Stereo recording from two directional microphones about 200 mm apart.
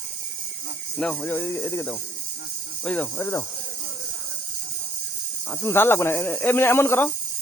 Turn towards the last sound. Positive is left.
turn(degrees=10)  # may be behind; listen again after turning